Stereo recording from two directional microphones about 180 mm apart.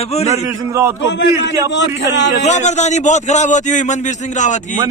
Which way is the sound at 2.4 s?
40° left (ahead or behind).